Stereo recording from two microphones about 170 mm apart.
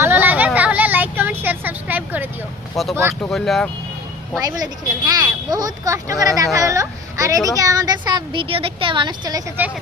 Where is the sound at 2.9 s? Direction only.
15° right (ahead or behind).